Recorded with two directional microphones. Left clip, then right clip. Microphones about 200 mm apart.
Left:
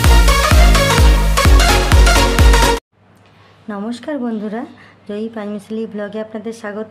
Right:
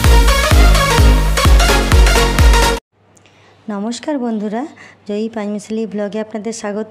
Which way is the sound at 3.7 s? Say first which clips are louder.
Right 3 dB; 30° right (ahead or behind).